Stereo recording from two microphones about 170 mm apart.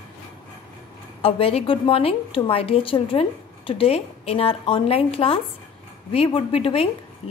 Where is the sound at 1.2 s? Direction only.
35° left (ahead or behind).